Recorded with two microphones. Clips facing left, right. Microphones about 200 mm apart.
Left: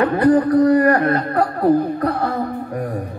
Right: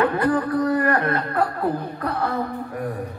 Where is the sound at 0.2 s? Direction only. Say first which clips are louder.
Left 7 dB; 35° left (ahead or behind).